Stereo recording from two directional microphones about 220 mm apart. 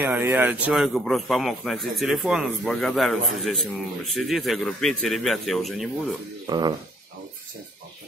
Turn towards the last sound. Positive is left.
turn(degrees=-20)  # may be behind; listen again after turning